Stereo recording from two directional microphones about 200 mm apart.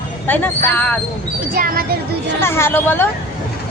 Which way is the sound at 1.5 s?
45° right (ahead or behind).